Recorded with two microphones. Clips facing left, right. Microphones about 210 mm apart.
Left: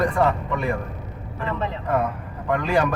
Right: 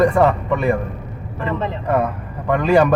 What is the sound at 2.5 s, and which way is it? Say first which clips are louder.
Speech: right 7 dB; 70° right (ahead or behind).